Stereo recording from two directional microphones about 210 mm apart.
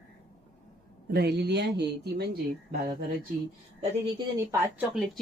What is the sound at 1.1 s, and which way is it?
Speech, 50° right (ahead or behind).